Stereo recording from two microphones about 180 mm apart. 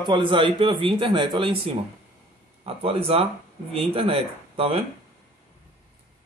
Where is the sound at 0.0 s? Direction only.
25° right (ahead or behind).